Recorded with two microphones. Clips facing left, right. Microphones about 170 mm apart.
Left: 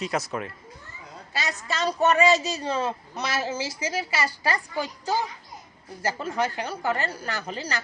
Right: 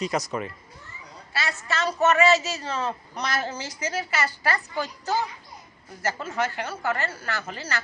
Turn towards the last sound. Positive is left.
turn(degrees=15)  # may be behind; listen again after turning